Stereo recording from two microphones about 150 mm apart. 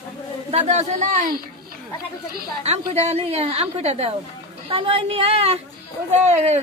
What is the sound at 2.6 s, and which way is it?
A woman's voice, 45° right (ahead or behind).